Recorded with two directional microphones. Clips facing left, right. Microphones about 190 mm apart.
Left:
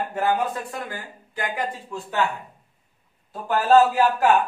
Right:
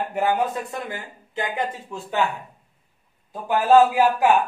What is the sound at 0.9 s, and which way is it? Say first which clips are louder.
A man's voice: right 3 dB; 20° right (ahead or behind).